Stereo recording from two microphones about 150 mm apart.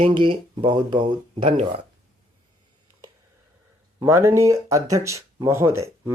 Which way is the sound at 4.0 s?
20° right (ahead or behind).